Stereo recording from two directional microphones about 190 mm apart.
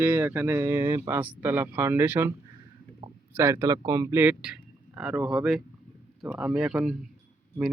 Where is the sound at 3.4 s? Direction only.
15° right (ahead or behind).